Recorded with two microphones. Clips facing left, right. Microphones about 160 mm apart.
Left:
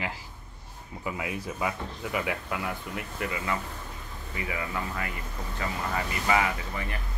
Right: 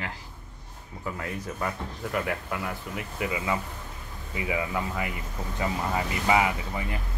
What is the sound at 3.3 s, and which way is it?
Speech, 15° right (ahead or behind).